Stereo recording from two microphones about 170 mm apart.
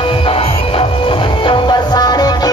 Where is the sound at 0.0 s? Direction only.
30° left (ahead or behind).